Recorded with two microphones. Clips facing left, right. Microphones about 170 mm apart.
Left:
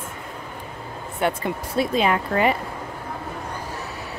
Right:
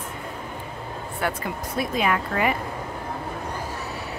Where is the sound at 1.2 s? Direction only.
25° left (ahead or behind).